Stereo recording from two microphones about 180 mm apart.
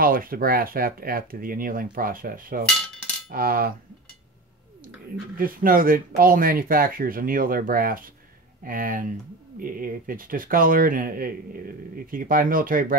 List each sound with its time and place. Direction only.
0.0 s speech: 55° right (ahead or behind)
3.3 s coin: 55° right (ahead or behind)
5.4 s speech: 50° right (ahead or behind)